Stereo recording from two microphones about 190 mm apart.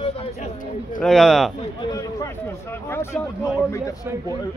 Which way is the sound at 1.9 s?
15° left (ahead or behind).